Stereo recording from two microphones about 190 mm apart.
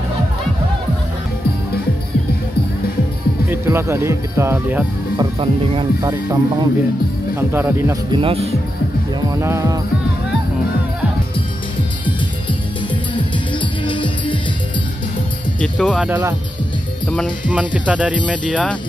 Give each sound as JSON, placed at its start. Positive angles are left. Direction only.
{"t": 3.4, "sound": "speech", "side_deg": -15}
{"t": 8.2, "sound": "speech", "side_deg": -30}
{"t": 9.3, "sound": "speech", "side_deg": -15}
{"t": 13.8, "sound": "music", "side_deg": 25}
{"t": 15.6, "sound": "speech", "side_deg": 5}
{"t": 16.0, "sound": "speech", "side_deg": -10}
{"t": 17.5, "sound": "speech", "side_deg": -5}
{"t": 18.3, "sound": "speech", "side_deg": 5}